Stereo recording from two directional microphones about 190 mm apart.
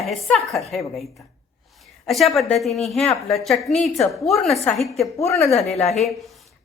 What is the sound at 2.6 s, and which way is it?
A woman's voice, centre (ahead or behind).